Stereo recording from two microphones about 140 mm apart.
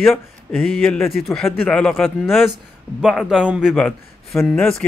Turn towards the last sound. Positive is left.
turn(degrees=0)  # may be behind; listen again after turning